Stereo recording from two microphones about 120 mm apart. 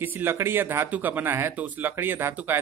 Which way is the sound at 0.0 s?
15° right (ahead or behind).